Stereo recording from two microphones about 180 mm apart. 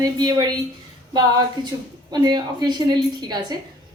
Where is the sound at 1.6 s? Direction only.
25° right (ahead or behind).